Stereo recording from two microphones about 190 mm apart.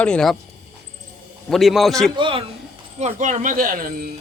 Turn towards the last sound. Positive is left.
turn(degrees=-45)  # may be behind; listen again after turning